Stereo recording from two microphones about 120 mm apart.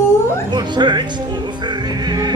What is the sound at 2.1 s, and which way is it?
Music, 35° right (ahead or behind).